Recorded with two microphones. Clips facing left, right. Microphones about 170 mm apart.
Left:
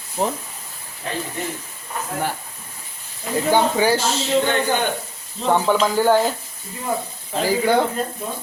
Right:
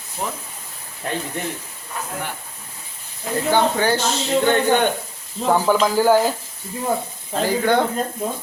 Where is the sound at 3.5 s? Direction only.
10° left (ahead or behind).